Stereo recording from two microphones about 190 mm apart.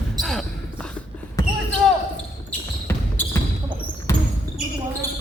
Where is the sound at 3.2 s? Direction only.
10° left (ahead or behind).